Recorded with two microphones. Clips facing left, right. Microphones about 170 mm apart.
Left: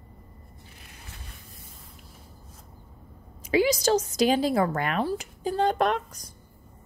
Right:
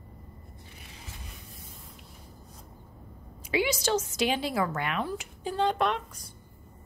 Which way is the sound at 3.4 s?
40° left (ahead or behind).